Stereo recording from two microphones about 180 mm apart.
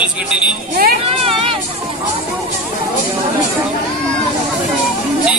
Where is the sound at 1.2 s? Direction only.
30° right (ahead or behind).